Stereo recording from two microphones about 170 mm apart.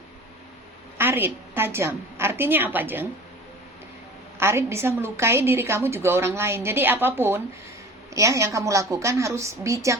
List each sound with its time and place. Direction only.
0.9 s a woman's voice: 10° right (ahead or behind)
4.4 s a woman's voice: 15° right (ahead or behind)